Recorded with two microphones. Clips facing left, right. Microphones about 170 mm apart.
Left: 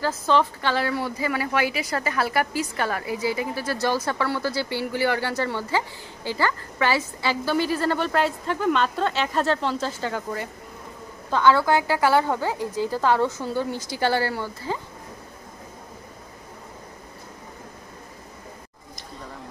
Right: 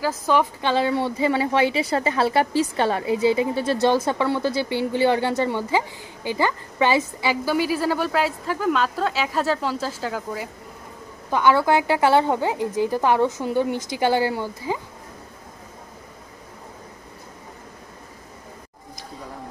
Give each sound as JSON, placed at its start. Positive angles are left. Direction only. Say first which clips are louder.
{"t": 0.0, "sound": "speech", "louder": "right 1 dB", "side_deg": -10}
{"t": 11.2, "sound": "a woman's voice", "louder": "right 1 dB", "side_deg": -15}